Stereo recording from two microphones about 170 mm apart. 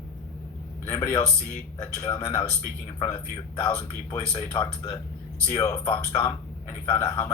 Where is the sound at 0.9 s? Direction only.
15° left (ahead or behind).